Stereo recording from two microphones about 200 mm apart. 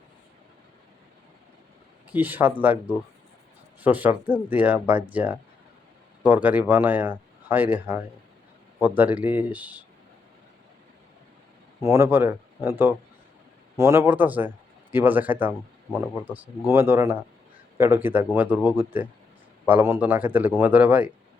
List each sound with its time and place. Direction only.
2.0 s speech: 10° right (ahead or behind)
3.8 s speech: 10° right (ahead or behind)
11.8 s speech: 15° right (ahead or behind)